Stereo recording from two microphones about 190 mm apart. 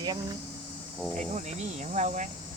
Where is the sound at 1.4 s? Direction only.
40° right (ahead or behind).